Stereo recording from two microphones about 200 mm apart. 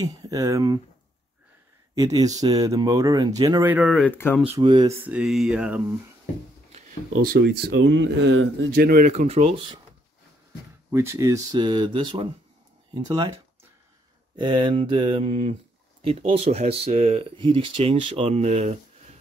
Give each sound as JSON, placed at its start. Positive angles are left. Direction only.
{"t": 0.0, "sound": "speech", "side_deg": -15}
{"t": 2.0, "sound": "speech", "side_deg": -20}
{"t": 4.6, "sound": "speech", "side_deg": -25}
{"t": 4.9, "sound": "a sound", "side_deg": -10}
{"t": 7.2, "sound": "speech", "side_deg": -55}
{"t": 8.7, "sound": "speech", "side_deg": -45}
{"t": 10.9, "sound": "speech", "side_deg": -15}